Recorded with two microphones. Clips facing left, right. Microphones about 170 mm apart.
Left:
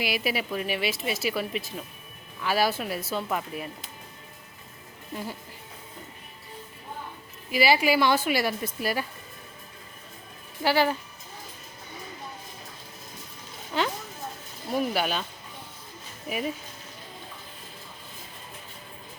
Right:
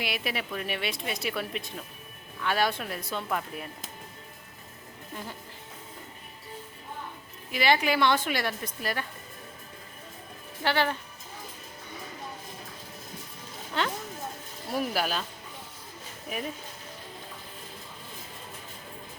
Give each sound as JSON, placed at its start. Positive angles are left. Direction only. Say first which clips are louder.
{"t": 0.0, "sound": "speech", "louder": "left 4 dB", "side_deg": 5}
{"t": 7.5, "sound": "a woman's voice", "louder": "left 3 dB", "side_deg": 5}
{"t": 10.6, "sound": "a woman's voice", "louder": "left 4 dB", "side_deg": 10}
{"t": 13.7, "sound": "speech", "louder": "left 2 dB", "side_deg": 5}